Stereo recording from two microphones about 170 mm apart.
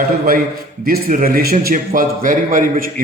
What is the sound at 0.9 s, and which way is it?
A man's voice, 55° right (ahead or behind).